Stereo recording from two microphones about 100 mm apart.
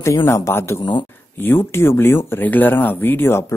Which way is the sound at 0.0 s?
25° left (ahead or behind).